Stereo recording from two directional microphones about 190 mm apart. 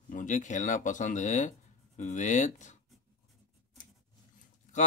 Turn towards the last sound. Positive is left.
turn(degrees=40)  # may be behind; listen again after turning